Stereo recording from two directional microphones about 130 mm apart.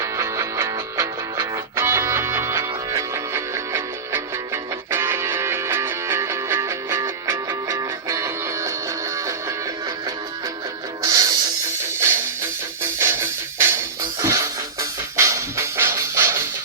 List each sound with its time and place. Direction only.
0.0 s music: 20° right (ahead or behind)
11.0 s music: 25° right (ahead or behind)